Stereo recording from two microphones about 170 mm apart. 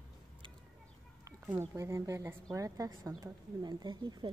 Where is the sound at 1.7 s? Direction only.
20° right (ahead or behind).